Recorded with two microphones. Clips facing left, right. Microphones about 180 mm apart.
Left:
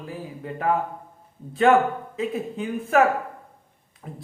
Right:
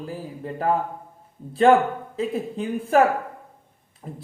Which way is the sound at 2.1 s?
35° right (ahead or behind).